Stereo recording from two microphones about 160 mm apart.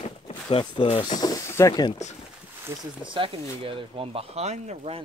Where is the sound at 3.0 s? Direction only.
30° right (ahead or behind).